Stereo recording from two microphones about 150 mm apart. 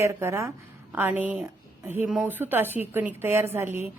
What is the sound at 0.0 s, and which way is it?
A woman's voice, 20° right (ahead or behind).